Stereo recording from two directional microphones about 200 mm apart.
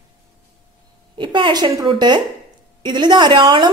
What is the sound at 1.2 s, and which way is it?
A woman's voice, 25° right (ahead or behind).